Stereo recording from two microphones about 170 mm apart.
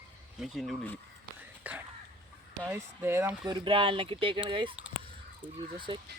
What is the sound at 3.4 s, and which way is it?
Speech, 25° right (ahead or behind).